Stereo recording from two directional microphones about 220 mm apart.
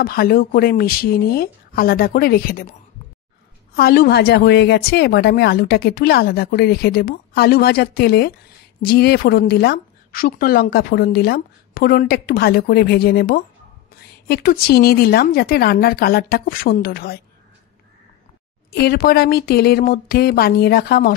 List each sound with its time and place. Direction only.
0.0 s a woman's voice: 45° left (ahead or behind)
3.7 s a woman's voice: 45° left (ahead or behind)
18.7 s a woman's voice: 45° left (ahead or behind)